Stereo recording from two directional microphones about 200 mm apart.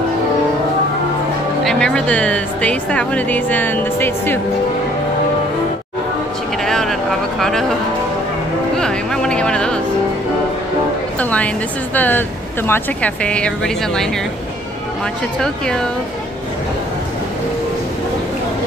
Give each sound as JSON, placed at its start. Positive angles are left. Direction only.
{"t": 1.6, "sound": "a woman's voice", "side_deg": 5}
{"t": 6.6, "sound": "vehicle", "side_deg": 0}
{"t": 8.7, "sound": "music", "side_deg": 5}
{"t": 11.1, "sound": "a woman's voice", "side_deg": 5}
{"t": 15.3, "sound": "speech", "side_deg": 5}